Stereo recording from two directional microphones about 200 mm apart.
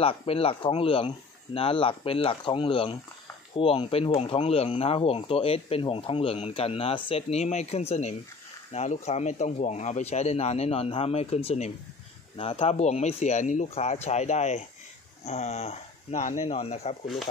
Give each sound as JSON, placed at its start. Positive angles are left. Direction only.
{"t": 0.0, "sound": "speech", "side_deg": 30}